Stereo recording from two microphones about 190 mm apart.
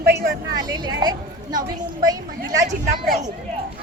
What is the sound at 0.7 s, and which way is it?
A woman's voice, 20° right (ahead or behind).